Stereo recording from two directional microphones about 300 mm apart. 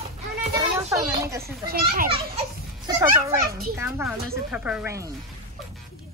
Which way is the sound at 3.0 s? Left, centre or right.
Centre.